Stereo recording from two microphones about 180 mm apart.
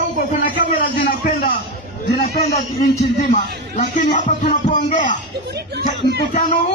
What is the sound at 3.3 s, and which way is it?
A man's voice, 40° left (ahead or behind).